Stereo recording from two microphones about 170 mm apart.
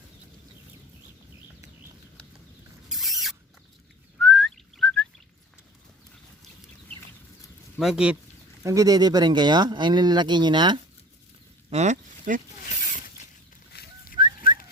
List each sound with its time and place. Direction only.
2.9 s rodents: centre (ahead or behind)
4.2 s whistling: centre (ahead or behind)
7.8 s speech: 5° right (ahead or behind)
8.6 s speech: 20° right (ahead or behind)
11.7 s speech: 40° right (ahead or behind)
12.6 s a sound: 55° left (ahead or behind)
14.4 s dog: 55° left (ahead or behind)